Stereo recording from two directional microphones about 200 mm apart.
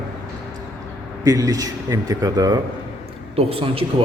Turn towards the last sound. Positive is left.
turn(degrees=-30)  # may be behind; listen again after turning